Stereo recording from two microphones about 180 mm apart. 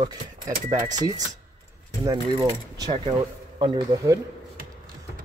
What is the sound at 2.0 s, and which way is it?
Speech, 20° right (ahead or behind).